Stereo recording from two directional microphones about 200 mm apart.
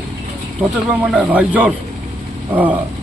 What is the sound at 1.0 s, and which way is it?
Speech, 5° right (ahead or behind).